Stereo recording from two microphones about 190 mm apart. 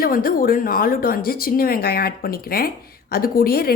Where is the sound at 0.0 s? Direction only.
50° left (ahead or behind).